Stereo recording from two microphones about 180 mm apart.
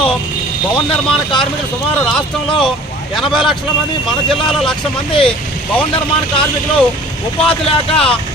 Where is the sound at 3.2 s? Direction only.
Centre (ahead or behind).